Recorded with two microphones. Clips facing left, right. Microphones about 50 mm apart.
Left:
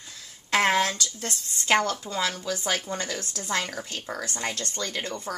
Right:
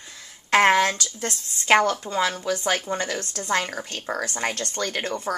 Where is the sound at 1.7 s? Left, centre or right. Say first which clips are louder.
Right 5 dB; right.